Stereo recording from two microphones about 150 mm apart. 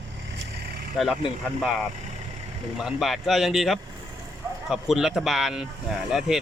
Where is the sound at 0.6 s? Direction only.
90° right.